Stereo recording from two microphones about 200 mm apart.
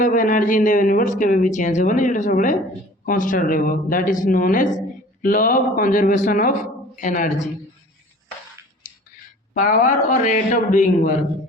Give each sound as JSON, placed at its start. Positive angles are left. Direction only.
{"t": 0.0, "sound": "a man's voice", "side_deg": 40}
{"t": 9.6, "sound": "a man's voice", "side_deg": 40}